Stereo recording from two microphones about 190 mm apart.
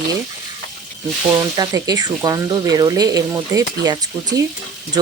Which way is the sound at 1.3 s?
20° right (ahead or behind).